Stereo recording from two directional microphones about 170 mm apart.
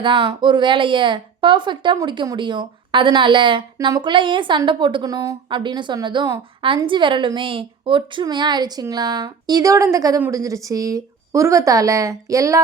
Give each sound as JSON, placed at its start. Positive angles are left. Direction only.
{"t": 0.0, "sound": "a woman's voice", "side_deg": -30}